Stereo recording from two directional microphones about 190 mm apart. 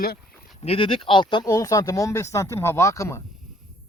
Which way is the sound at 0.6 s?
30° left (ahead or behind).